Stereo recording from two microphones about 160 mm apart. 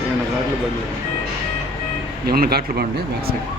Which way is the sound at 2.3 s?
70° right (ahead or behind).